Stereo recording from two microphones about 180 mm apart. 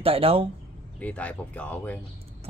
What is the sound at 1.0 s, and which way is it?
Speech, 10° left (ahead or behind).